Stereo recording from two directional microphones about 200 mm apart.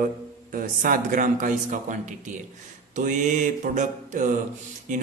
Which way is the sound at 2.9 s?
40° right (ahead or behind).